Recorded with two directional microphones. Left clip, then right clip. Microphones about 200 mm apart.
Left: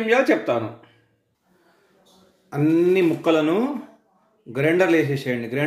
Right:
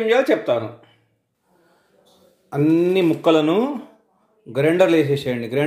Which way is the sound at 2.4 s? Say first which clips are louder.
Right 1 dB; 15° right (ahead or behind).